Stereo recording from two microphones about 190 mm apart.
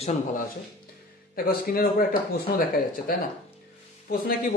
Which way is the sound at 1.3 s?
50° left (ahead or behind).